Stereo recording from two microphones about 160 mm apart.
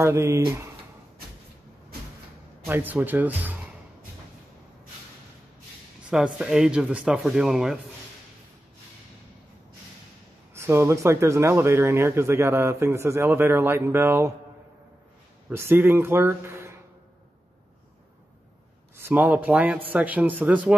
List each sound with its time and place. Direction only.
0.0 s speech: 15° right (ahead or behind)
2.6 s speech: 10° right (ahead or behind)
6.0 s speech: 5° right (ahead or behind)
10.5 s speech: 15° right (ahead or behind)
15.5 s speech: 15° right (ahead or behind)
18.9 s speech: 10° right (ahead or behind)